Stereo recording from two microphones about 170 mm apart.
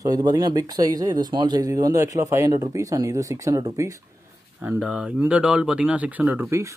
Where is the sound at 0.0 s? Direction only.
20° right (ahead or behind).